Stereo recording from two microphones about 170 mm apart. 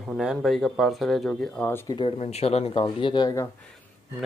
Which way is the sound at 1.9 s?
35° left (ahead or behind).